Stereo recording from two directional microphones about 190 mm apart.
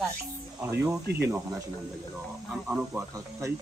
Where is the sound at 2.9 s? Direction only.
15° right (ahead or behind).